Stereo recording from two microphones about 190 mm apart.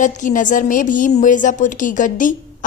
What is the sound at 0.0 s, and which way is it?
A woman's voice, 40° left (ahead or behind).